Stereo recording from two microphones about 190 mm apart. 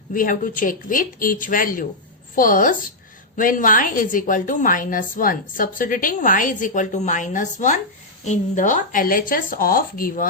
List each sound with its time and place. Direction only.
0.1 s a woman's voice: 45° left (ahead or behind)